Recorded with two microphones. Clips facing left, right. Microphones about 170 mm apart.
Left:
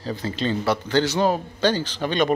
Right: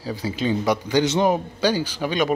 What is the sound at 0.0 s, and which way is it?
A man's voice, 10° right (ahead or behind).